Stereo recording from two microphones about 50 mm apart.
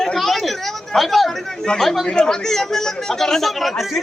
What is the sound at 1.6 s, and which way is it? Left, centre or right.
Speech, centre.